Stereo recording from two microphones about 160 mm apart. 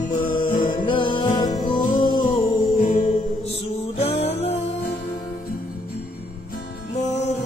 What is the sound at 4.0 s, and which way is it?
Music, 40° left (ahead or behind).